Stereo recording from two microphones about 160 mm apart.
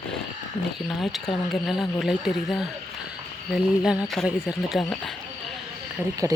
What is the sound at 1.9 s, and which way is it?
Speech, centre (ahead or behind).